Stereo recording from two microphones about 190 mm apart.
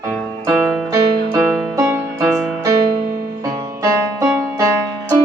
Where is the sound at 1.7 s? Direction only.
15° right (ahead or behind).